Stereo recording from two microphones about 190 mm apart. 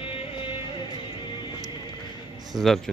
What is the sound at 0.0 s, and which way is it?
Music, 30° left (ahead or behind).